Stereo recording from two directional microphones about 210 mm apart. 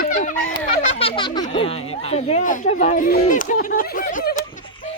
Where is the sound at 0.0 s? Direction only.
40° left (ahead or behind).